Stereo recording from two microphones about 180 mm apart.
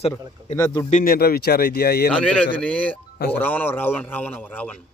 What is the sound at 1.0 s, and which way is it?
Speech, 60° left (ahead or behind).